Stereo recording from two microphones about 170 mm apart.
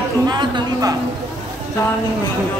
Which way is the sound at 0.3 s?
25° right (ahead or behind).